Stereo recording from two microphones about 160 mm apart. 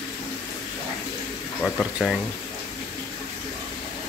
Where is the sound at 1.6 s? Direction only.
5° left (ahead or behind).